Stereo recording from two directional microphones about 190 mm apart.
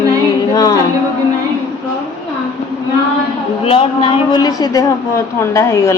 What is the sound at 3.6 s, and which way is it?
Speech, 30° left (ahead or behind).